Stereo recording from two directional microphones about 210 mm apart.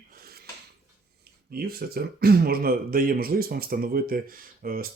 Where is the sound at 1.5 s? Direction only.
45° right (ahead or behind).